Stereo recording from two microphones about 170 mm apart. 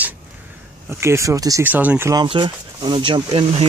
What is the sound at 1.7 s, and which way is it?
Speech, 10° right (ahead or behind).